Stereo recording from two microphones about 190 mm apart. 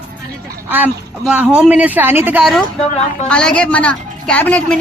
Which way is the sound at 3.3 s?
5° left (ahead or behind).